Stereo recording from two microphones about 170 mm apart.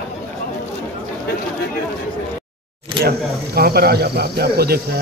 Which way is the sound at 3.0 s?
65° right (ahead or behind).